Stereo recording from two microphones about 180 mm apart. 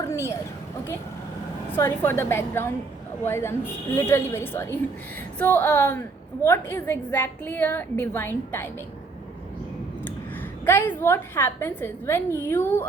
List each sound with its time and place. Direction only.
0.0 s a sound: 15° left (ahead or behind)
1.7 s a woman's voice: 10° left (ahead or behind)
10.7 s a woman's voice: 10° left (ahead or behind)